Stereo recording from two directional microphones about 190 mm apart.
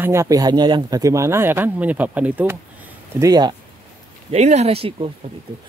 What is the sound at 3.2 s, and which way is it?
Speech, 20° right (ahead or behind).